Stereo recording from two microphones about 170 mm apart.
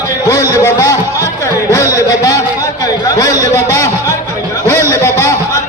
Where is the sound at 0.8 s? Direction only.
20° left (ahead or behind).